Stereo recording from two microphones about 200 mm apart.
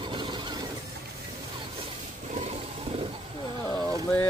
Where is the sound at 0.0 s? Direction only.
25° right (ahead or behind).